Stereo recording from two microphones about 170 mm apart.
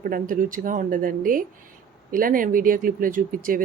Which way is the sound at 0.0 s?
55° right (ahead or behind).